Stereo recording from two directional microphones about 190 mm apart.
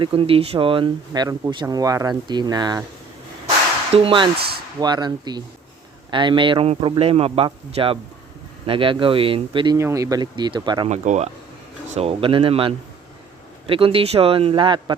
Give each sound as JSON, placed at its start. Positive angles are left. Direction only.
{"t": 0.0, "sound": "speech", "side_deg": -30}
{"t": 3.9, "sound": "speech", "side_deg": -30}
{"t": 9.7, "sound": "speech", "side_deg": -15}
{"t": 10.8, "sound": "speech", "side_deg": -40}